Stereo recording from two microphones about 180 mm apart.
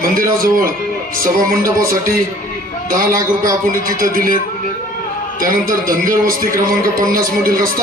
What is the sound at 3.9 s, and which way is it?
Speech, 50° right (ahead or behind).